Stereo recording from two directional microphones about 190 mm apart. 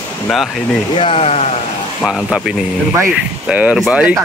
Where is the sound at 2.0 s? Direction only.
Centre (ahead or behind).